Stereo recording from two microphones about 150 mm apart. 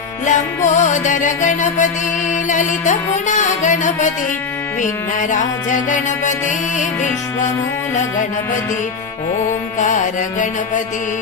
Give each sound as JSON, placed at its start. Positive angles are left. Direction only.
{"t": 0.3, "sound": "music", "side_deg": 55}
{"t": 5.3, "sound": "music", "side_deg": 55}
{"t": 9.7, "sound": "music", "side_deg": 55}